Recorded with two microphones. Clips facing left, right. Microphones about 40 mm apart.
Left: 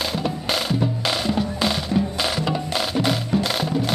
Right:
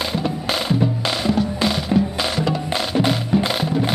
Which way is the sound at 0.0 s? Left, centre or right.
Centre.